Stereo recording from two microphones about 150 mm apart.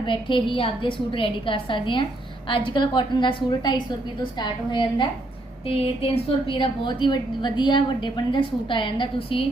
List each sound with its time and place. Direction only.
0.0 s a woman's voice: 35° left (ahead or behind)